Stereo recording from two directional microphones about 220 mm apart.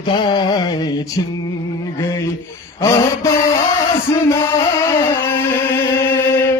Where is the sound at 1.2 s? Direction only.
20° left (ahead or behind).